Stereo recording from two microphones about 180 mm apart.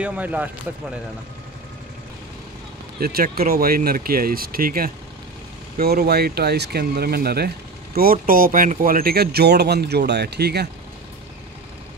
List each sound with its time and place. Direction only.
0.0 s speech: 10° right (ahead or behind)
3.0 s speech: 55° right (ahead or behind)